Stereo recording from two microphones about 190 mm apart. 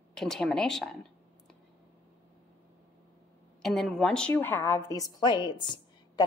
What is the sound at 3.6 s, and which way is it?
A woman's voice, centre (ahead or behind).